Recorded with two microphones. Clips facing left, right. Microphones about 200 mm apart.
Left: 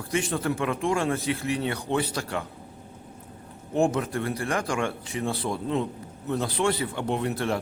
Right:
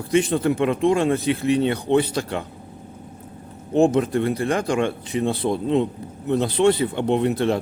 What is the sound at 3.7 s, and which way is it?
Speech, 20° right (ahead or behind).